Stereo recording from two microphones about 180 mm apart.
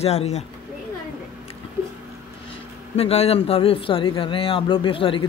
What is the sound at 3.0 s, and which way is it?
A man's voice, 35° left (ahead or behind).